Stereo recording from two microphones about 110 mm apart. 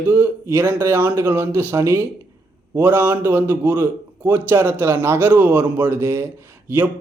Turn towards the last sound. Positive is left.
turn(degrees=-20)  # may be behind; listen again after turning